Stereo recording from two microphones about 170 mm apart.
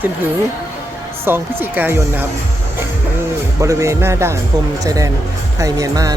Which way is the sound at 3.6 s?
15° right (ahead or behind).